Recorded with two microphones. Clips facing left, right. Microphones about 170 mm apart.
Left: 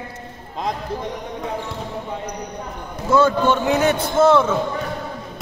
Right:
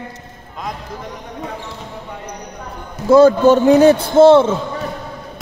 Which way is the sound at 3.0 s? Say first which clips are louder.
Right 8 dB; 35° right (ahead or behind).